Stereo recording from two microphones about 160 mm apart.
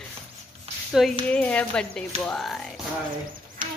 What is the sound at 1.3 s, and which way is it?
Speech, 10° left (ahead or behind).